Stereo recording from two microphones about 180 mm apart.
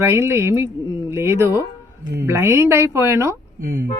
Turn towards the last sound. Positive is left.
turn(degrees=-15)  # may be behind; listen again after turning